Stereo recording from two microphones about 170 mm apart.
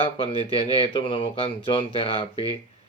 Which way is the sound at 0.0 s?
30° left (ahead or behind).